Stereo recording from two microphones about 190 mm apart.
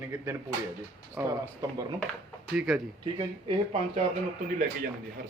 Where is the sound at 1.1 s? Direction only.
15° right (ahead or behind).